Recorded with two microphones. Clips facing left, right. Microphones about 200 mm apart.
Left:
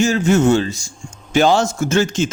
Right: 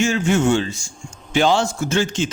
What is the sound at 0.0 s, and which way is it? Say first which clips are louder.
A man's voice: left 3 dB; 40° left (ahead or behind).